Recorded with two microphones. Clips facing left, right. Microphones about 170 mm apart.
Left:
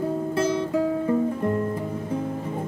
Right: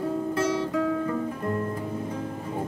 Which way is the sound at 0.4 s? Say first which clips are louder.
Left 4 dB; 30° left (ahead or behind).